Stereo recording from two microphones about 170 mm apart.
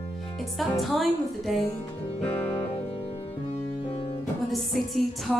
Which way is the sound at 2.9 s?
35° left (ahead or behind).